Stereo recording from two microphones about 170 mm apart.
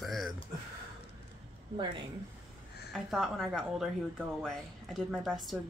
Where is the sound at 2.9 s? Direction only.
Centre (ahead or behind).